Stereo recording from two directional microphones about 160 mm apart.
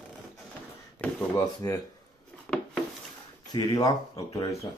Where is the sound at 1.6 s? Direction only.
20° left (ahead or behind).